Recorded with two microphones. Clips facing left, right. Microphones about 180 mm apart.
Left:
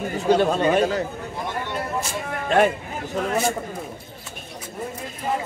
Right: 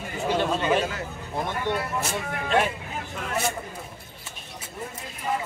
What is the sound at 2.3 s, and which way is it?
Speech, 50° left (ahead or behind).